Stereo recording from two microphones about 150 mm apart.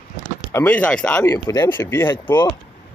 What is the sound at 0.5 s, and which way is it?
Speech, 10° left (ahead or behind).